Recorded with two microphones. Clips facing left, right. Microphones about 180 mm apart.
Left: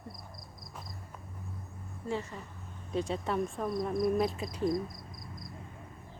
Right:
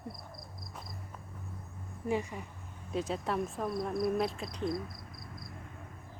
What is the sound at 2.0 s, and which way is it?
Speech, 15° right (ahead or behind).